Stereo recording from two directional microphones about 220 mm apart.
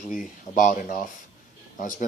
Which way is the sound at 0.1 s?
35° left (ahead or behind).